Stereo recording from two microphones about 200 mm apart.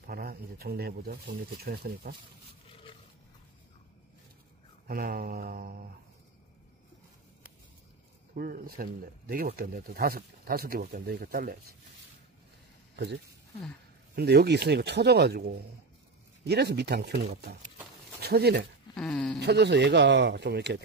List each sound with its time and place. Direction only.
0.0 s speech: 50° right (ahead or behind)
2.7 s roaring cats: 25° left (ahead or behind)
4.8 s speech: 45° right (ahead or behind)
8.4 s speech: 45° right (ahead or behind)
12.9 s speech: 55° right (ahead or behind)
18.9 s speech: 5° left (ahead or behind)
19.4 s speech: 55° right (ahead or behind)